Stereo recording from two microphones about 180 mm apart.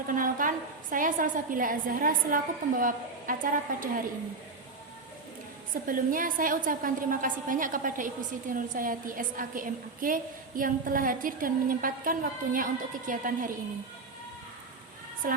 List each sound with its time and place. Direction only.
0.1 s a woman's voice: 50° right (ahead or behind)
5.7 s a woman's voice: 50° right (ahead or behind)